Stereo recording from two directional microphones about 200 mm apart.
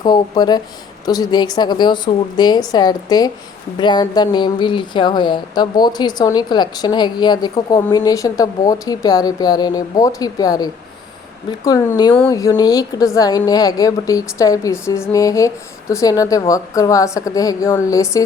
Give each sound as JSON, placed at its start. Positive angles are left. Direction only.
{"t": 0.0, "sound": "a woman's voice", "side_deg": 20}